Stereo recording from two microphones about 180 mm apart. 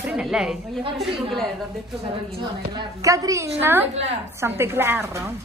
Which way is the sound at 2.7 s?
20° right (ahead or behind).